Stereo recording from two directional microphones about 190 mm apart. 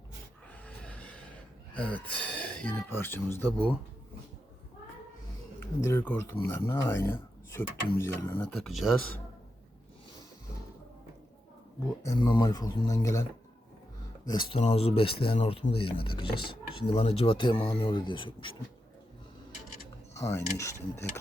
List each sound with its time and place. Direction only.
0.6 s a sound: 5° left (ahead or behind)
1.7 s speech: 5° left (ahead or behind)
5.8 s speech: 10° left (ahead or behind)
12.0 s speech: 20° left (ahead or behind)
14.5 s speech: 30° left (ahead or behind)
20.1 s speech: 15° left (ahead or behind)